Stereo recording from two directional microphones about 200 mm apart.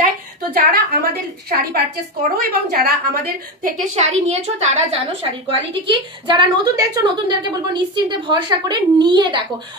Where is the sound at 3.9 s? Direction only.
35° right (ahead or behind).